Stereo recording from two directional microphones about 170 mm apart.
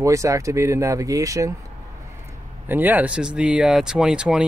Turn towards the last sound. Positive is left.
turn(degrees=-5)  # may be behind; listen again after turning